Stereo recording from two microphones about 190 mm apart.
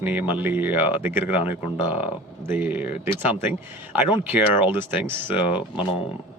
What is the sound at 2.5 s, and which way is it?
Speech, 10° right (ahead or behind).